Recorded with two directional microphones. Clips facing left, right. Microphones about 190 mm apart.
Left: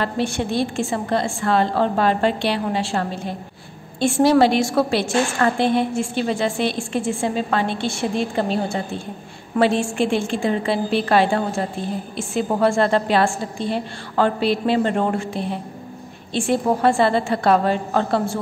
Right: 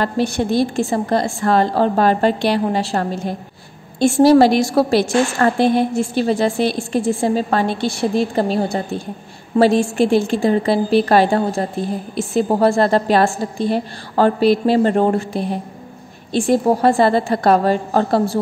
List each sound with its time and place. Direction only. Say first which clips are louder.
0.0 s a woman's voice: right 4 dB; 40° right (ahead or behind)